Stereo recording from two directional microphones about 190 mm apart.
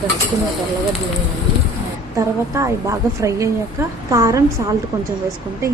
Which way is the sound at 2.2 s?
15° right (ahead or behind).